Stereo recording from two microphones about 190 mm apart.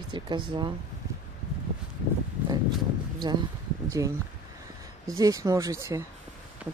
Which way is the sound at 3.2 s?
20° right (ahead or behind).